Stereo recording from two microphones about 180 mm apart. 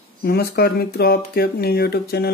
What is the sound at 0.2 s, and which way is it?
Speech, 60° left (ahead or behind).